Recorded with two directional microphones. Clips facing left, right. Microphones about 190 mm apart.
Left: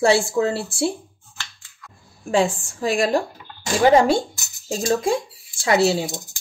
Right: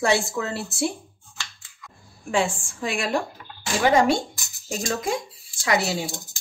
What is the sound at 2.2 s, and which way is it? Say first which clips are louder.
Speech: left 4 dB; 35° left (ahead or behind).